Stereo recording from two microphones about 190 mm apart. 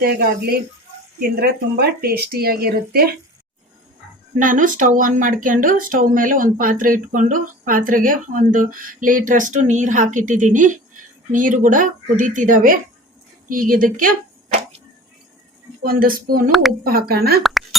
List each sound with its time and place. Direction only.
0.0 s speech: 55° right (ahead or behind)
4.4 s speech: 45° right (ahead or behind)
15.8 s speech: 50° right (ahead or behind)
17.4 s plop: centre (ahead or behind)